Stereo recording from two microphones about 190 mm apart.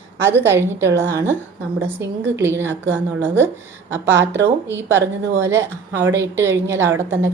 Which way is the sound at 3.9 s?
75° right (ahead or behind).